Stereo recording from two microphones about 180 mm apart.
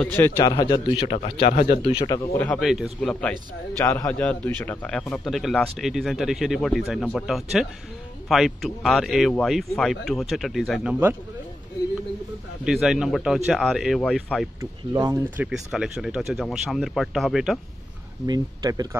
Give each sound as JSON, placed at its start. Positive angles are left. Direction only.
{"t": 0.0, "sound": "a man's voice", "side_deg": 5}
{"t": 0.4, "sound": "a man's voice", "side_deg": 25}
{"t": 1.5, "sound": "speech", "side_deg": 45}
{"t": 1.9, "sound": "a man's voice", "side_deg": 25}
{"t": 2.3, "sound": "a man's voice", "side_deg": 15}
{"t": 2.6, "sound": "a man's voice", "side_deg": 0}
{"t": 12.6, "sound": "a man's voice", "side_deg": -5}
{"t": 14.6, "sound": "speech", "side_deg": -20}
{"t": 15.3, "sound": "a man's voice", "side_deg": -5}
{"t": 18.2, "sound": "speech", "side_deg": -20}